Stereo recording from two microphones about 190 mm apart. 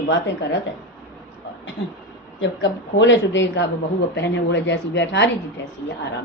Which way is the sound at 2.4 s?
75° left (ahead or behind).